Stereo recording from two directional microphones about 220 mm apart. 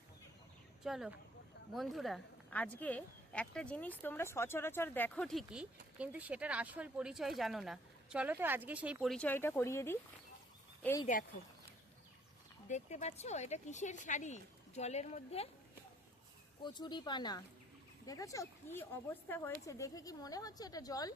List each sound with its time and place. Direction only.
0.8 s speech: centre (ahead or behind)
11.0 s speech: 35° left (ahead or behind)
12.6 s speech: 30° left (ahead or behind)
16.6 s a woman's voice: 20° left (ahead or behind)